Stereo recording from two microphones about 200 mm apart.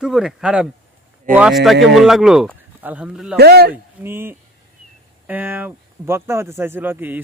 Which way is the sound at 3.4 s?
55° right (ahead or behind).